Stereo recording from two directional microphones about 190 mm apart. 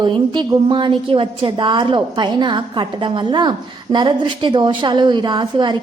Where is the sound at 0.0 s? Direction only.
25° right (ahead or behind).